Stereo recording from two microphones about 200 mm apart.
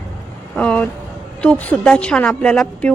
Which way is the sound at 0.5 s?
5° left (ahead or behind).